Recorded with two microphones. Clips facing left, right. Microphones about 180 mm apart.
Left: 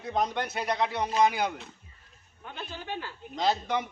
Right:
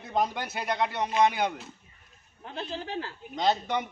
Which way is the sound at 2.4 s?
30° right (ahead or behind).